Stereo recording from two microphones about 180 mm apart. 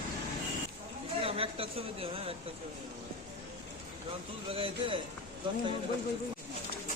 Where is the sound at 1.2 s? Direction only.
30° right (ahead or behind).